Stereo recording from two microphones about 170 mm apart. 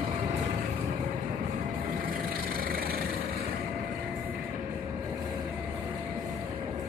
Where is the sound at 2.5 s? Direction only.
60° right (ahead or behind).